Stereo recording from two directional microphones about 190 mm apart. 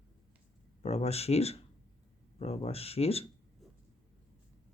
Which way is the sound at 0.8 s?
35° left (ahead or behind).